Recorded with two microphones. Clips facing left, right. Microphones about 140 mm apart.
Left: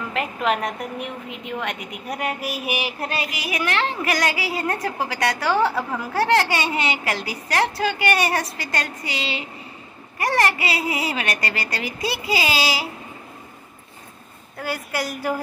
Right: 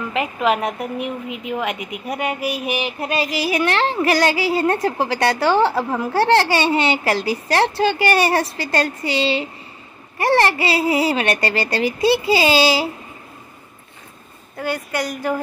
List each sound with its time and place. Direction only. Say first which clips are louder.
0.1 s a woman's voice: right 4 dB; 5° right (ahead or behind)
3.2 s a woman's voice: right 10 dB; 30° right (ahead or behind)
14.6 s a woman's voice: right 4 dB; 5° left (ahead or behind)